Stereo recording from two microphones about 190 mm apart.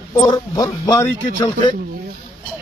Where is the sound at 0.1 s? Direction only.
15° left (ahead or behind).